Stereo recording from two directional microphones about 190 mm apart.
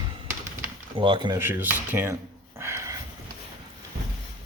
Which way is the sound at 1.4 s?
10° right (ahead or behind).